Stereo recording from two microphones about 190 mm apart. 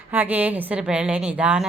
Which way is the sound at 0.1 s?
10° right (ahead or behind).